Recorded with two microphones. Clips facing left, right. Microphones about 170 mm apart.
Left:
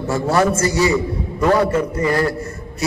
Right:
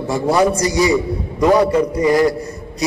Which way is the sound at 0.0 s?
15° right (ahead or behind).